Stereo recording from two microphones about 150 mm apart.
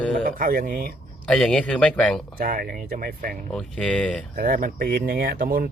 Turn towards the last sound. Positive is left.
turn(degrees=-80)